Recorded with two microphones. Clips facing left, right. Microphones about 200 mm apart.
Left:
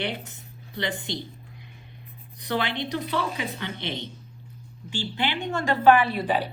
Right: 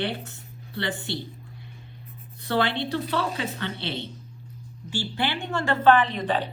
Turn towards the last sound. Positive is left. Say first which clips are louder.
# even
turn(degrees=10)  # may be behind; listen again after turning